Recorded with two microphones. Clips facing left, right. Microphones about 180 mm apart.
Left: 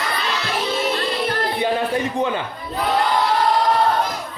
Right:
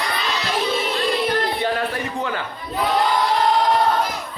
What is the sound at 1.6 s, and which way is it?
Speech, 20° left (ahead or behind).